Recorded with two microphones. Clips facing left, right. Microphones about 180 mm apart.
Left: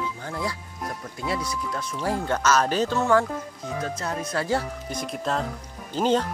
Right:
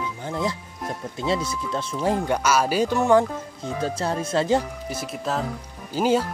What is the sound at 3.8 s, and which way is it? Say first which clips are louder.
Speech: right 6 dB; 30° right (ahead or behind).